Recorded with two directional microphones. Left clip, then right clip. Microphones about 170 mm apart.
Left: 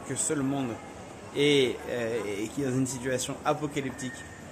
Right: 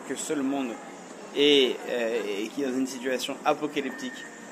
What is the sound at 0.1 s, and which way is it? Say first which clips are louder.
Speech: right 1 dB; 20° left (ahead or behind).